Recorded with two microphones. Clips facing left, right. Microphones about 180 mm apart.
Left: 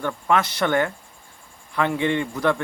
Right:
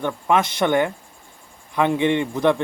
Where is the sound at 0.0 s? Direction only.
20° right (ahead or behind).